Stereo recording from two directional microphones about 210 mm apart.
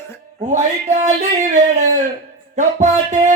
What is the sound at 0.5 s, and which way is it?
Music, 35° right (ahead or behind).